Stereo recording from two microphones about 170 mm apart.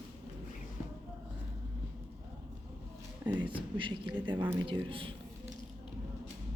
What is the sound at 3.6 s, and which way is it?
A woman's voice, 30° right (ahead or behind).